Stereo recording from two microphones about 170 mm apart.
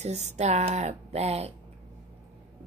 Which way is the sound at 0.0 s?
40° right (ahead or behind).